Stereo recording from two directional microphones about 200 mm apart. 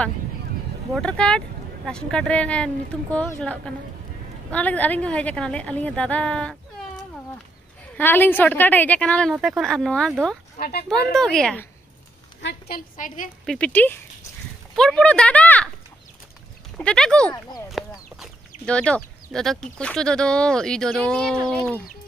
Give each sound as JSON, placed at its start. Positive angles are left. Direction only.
{"t": 0.9, "sound": "a woman's voice", "side_deg": 5}
{"t": 8.0, "sound": "a woman's voice", "side_deg": 10}
{"t": 10.6, "sound": "a woman's voice", "side_deg": 50}
{"t": 11.1, "sound": "a woman's voice", "side_deg": 5}
{"t": 12.4, "sound": "a woman's voice", "side_deg": 55}
{"t": 13.5, "sound": "a woman's voice", "side_deg": 5}
{"t": 16.7, "sound": "a woman's voice", "side_deg": 5}
{"t": 17.8, "sound": "chicken", "side_deg": 0}
{"t": 18.1, "sound": "speech", "side_deg": 0}